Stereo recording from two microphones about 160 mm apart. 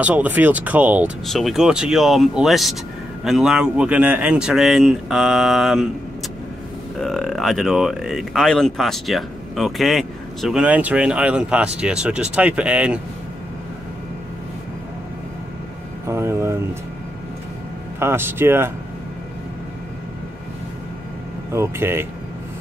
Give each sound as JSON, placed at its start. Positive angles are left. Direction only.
{"t": 0.0, "sound": "speech", "side_deg": -10}
{"t": 7.0, "sound": "speech", "side_deg": 0}
{"t": 16.1, "sound": "vehicle", "side_deg": -15}
{"t": 17.9, "sound": "speech", "side_deg": -15}
{"t": 21.5, "sound": "speech", "side_deg": -15}